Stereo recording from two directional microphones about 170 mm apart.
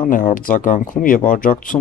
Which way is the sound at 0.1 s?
55° left (ahead or behind).